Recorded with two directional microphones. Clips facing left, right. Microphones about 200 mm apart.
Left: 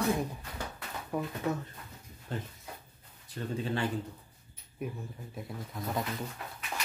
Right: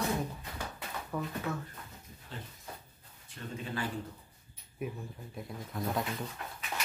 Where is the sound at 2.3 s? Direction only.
50° left (ahead or behind).